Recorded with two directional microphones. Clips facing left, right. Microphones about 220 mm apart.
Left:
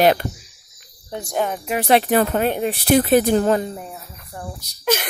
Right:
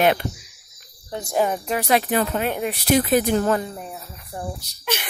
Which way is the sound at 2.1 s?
50° left (ahead or behind).